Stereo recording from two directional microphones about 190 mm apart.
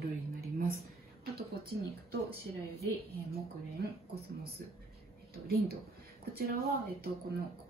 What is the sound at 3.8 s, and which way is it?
Speech, 60° right (ahead or behind).